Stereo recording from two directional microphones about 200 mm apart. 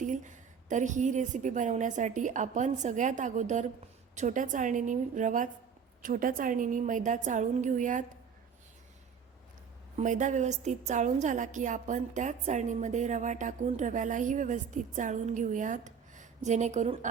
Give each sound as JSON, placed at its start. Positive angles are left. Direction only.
{"t": 0.0, "sound": "a woman's voice", "side_deg": -40}
{"t": 10.0, "sound": "a woman's voice", "side_deg": -40}